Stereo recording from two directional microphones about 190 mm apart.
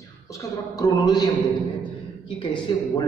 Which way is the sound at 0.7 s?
20° left (ahead or behind).